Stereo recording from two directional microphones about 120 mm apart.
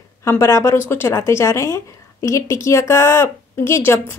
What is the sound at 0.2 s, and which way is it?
Speech, 25° left (ahead or behind).